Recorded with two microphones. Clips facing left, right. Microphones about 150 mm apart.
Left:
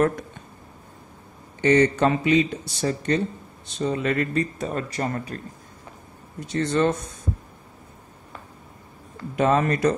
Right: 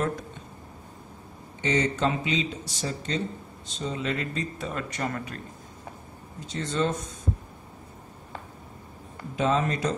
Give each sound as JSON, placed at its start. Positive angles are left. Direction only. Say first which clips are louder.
{"t": 1.6, "sound": "speech", "louder": "left 7 dB", "side_deg": 60}
{"t": 4.6, "sound": "speech", "louder": "left 5 dB", "side_deg": 40}
{"t": 6.4, "sound": "speech", "louder": "left 6 dB", "side_deg": 70}
{"t": 9.3, "sound": "speech", "louder": "left 5 dB", "side_deg": 60}